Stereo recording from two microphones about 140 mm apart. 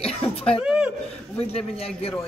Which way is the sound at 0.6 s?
5° right (ahead or behind).